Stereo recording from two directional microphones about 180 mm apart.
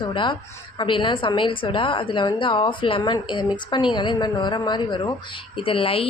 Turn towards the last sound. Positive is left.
turn(degrees=30)  # may be behind; listen again after turning